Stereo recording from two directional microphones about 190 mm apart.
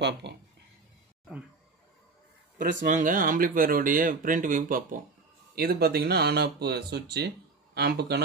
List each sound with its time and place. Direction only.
0.0 s speech: 65° right (ahead or behind)
2.6 s speech: 45° right (ahead or behind); by 8.2 s 60° right (ahead or behind)